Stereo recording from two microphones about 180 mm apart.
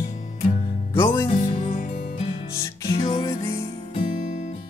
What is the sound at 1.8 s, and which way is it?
Music, 45° left (ahead or behind).